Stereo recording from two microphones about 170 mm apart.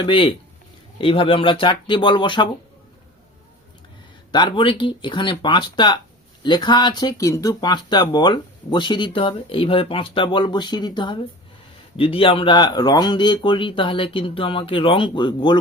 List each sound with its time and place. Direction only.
0.0 s speech: 30° left (ahead or behind)
4.3 s speech: 25° left (ahead or behind)